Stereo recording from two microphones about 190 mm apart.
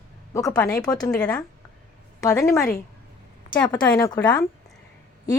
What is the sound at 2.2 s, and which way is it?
Speech, 15° left (ahead or behind).